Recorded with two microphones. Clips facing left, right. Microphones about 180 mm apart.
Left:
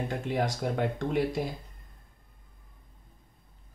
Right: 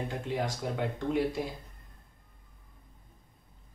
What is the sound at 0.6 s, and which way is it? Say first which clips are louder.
Speech: left 3 dB; 60° left (ahead or behind).